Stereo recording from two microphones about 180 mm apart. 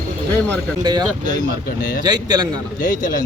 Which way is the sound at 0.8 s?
25° right (ahead or behind).